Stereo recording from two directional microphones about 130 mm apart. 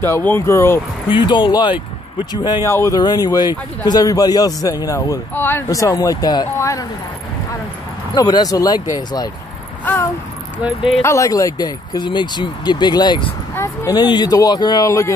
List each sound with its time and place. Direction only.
0.0 s a man's voice: 15° left (ahead or behind)
1.0 s a man's voice: 40° left (ahead or behind)
5.3 s a man's voice: 15° left (ahead or behind)
8.1 s a man's voice: 30° left (ahead or behind)
11.0 s a man's voice: 20° left (ahead or behind)